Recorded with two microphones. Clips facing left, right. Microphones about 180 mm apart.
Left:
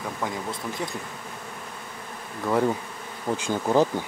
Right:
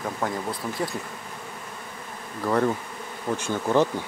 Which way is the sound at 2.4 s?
5° left (ahead or behind).